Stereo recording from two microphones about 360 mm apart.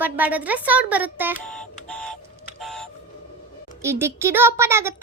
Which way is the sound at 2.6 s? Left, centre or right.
Centre.